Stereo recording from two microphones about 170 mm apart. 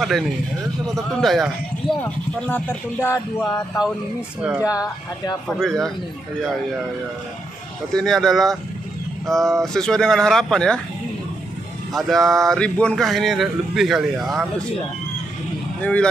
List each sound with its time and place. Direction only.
0.9 s speech: centre (ahead or behind)
4.4 s speech: 5° right (ahead or behind)
4.7 s speech: 20° left (ahead or behind)
5.5 s speech: centre (ahead or behind)
7.9 s speech: centre (ahead or behind)
11.9 s speech: centre (ahead or behind)
15.8 s speech: 10° left (ahead or behind)